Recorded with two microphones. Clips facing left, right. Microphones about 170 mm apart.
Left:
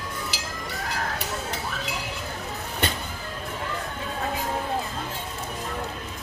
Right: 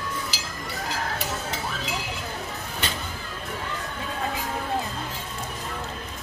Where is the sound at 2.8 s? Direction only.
55° left (ahead or behind).